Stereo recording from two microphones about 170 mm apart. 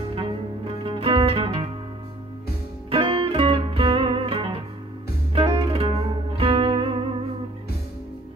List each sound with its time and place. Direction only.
0.1 s music: 30° right (ahead or behind)
2.9 s music: 30° right (ahead or behind)